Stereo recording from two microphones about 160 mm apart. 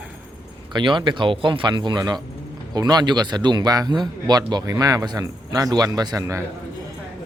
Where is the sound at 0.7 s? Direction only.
30° right (ahead or behind).